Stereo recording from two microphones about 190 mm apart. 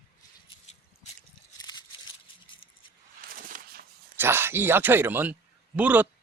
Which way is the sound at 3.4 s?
45° right (ahead or behind).